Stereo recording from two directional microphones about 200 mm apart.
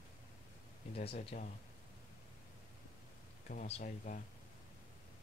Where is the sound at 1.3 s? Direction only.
40° left (ahead or behind).